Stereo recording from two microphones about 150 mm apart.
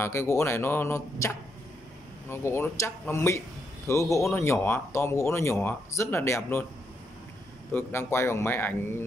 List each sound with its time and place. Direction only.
0.0 s speech: 20° left (ahead or behind)
7.7 s speech: 15° left (ahead or behind)